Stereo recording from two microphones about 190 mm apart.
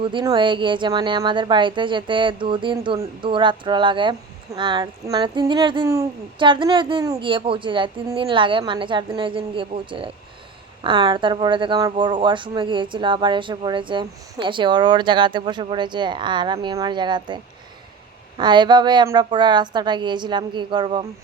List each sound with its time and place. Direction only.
0.0 s a woman's voice: 25° right (ahead or behind)